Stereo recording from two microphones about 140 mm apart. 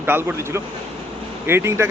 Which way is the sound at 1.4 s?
15° right (ahead or behind).